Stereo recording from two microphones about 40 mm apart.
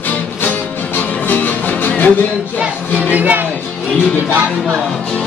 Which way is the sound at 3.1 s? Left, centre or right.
Right.